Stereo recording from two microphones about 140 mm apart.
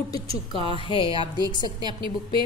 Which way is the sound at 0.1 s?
25° left (ahead or behind).